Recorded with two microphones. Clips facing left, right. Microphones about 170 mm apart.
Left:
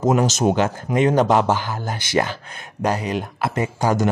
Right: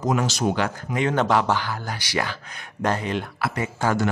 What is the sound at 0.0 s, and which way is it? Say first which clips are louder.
A man's voice: left 5 dB; 25° left (ahead or behind).